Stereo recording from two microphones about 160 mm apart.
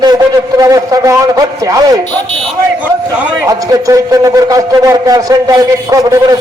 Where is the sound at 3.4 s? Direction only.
20° right (ahead or behind).